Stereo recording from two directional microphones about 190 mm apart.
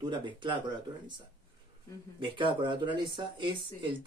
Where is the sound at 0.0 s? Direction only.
25° right (ahead or behind).